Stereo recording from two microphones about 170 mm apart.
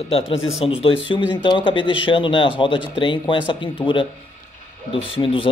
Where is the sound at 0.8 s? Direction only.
30° left (ahead or behind).